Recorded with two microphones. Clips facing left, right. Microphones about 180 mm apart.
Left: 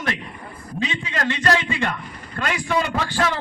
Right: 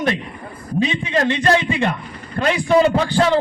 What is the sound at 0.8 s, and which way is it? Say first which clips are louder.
A man's voice: right 6 dB; 20° right (ahead or behind).